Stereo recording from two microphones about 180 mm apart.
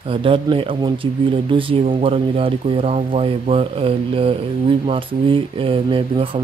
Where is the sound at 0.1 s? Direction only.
30° right (ahead or behind).